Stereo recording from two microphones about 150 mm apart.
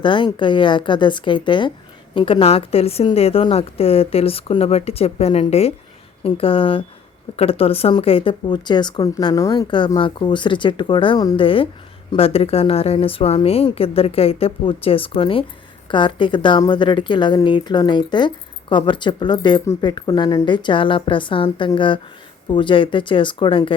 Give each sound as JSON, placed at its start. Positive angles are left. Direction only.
{"t": 0.0, "sound": "speech", "side_deg": 35}